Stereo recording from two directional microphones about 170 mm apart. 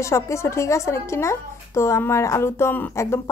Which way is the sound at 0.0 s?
15° left (ahead or behind).